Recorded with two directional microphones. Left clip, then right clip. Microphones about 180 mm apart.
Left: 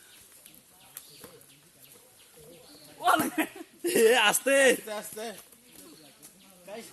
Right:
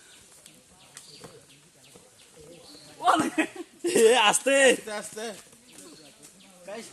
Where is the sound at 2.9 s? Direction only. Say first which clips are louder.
Right 2 dB; 35° left (ahead or behind).